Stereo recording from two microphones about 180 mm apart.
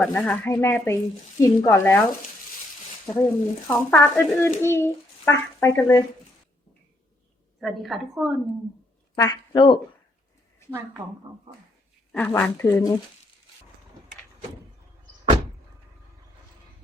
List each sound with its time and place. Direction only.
0.0 s a child's voice: 5° left (ahead or behind)
3.2 s a child's voice: 10° left (ahead or behind)
7.6 s a woman's voice: centre (ahead or behind)
9.1 s speech: 20° left (ahead or behind)
10.7 s a woman's voice: 10° right (ahead or behind)
11.3 s speech: 30° right (ahead or behind)
12.1 s a child's voice: 10° left (ahead or behind)